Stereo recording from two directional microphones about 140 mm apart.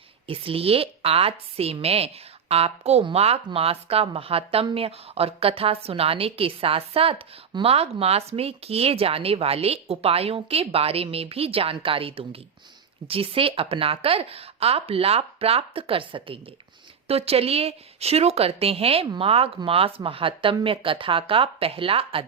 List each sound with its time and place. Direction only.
0.3 s a woman's voice: 40° right (ahead or behind)